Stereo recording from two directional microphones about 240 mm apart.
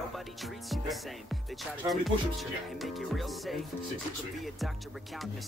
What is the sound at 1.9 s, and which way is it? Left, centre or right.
Speech, centre.